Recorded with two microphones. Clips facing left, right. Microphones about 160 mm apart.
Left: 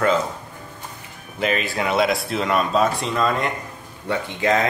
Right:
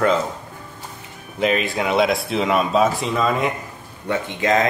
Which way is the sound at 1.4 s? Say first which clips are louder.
Right 2 dB; centre (ahead or behind).